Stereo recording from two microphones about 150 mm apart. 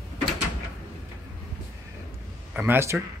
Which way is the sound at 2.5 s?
15° right (ahead or behind).